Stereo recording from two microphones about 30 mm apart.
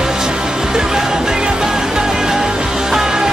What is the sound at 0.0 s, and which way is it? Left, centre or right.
Music, right.